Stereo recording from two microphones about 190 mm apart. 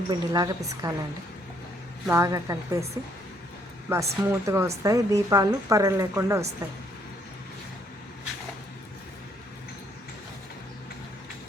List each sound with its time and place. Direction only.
0.1 s a woman's voice: 20° right (ahead or behind)
2.0 s speech: 15° right (ahead or behind)
3.8 s speech: 15° right (ahead or behind)